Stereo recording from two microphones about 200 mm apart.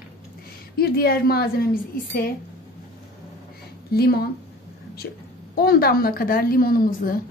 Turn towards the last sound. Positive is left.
turn(degrees=45)  # may be behind; listen again after turning